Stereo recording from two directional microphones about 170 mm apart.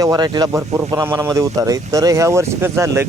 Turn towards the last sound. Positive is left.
turn(degrees=-15)  # may be behind; listen again after turning